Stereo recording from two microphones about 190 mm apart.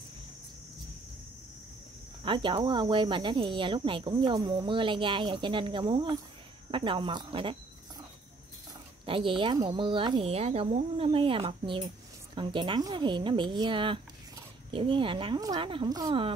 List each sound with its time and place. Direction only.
2.2 s speech: 25° right (ahead or behind)
9.0 s speech: 25° right (ahead or behind)